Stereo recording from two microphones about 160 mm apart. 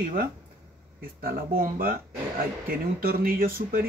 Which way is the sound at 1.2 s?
65° right (ahead or behind).